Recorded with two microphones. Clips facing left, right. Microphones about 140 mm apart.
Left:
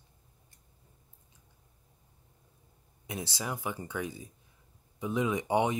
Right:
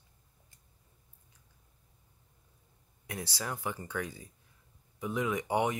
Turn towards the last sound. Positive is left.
turn(degrees=20)  # may be behind; listen again after turning